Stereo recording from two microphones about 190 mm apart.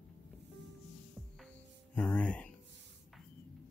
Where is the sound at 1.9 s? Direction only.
10° left (ahead or behind).